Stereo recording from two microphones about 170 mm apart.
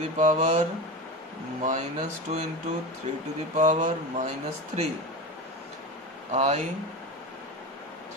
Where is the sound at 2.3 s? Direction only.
45° right (ahead or behind).